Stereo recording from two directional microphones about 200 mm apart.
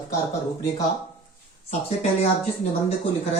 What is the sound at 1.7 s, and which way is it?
Speech, 30° left (ahead or behind).